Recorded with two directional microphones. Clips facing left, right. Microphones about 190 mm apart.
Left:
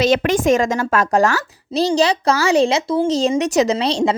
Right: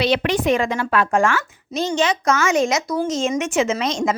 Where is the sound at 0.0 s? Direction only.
45° left (ahead or behind).